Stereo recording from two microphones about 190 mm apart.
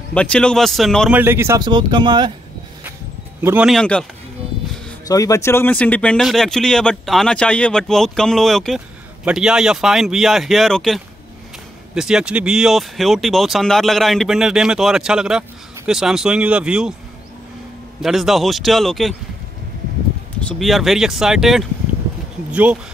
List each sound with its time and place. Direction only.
0.1 s speech: 5° left (ahead or behind)
1.2 s speech: 15° right (ahead or behind)
3.4 s speech: 5° right (ahead or behind)
5.0 s speech: 20° left (ahead or behind); by 16.9 s 5° right (ahead or behind)
18.0 s speech: centre (ahead or behind)
20.3 s speech: 5° left (ahead or behind)